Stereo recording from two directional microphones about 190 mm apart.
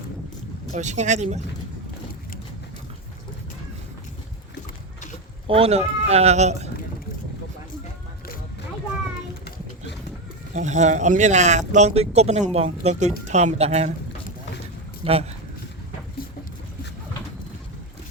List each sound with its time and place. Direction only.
0.7 s speech: 40° right (ahead or behind)
5.5 s speech: 30° right (ahead or behind)
10.5 s speech: 40° right (ahead or behind)
15.0 s speech: 30° right (ahead or behind)